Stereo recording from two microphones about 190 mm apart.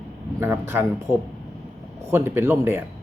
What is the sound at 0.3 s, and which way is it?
Speech, 15° right (ahead or behind).